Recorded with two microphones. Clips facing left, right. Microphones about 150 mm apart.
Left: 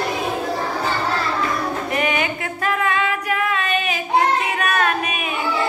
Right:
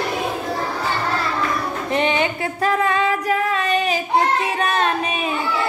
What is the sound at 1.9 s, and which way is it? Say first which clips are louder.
Singing: right 4 dB; 30° right (ahead or behind).